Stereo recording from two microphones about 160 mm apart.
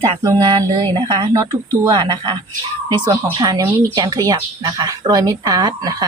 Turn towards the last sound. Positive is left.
turn(degrees=-25)  # may be behind; listen again after turning